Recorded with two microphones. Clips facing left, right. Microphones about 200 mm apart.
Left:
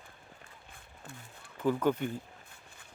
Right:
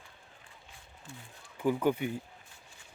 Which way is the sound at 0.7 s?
60° left (ahead or behind).